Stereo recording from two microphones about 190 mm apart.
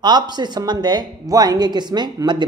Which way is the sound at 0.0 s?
20° right (ahead or behind).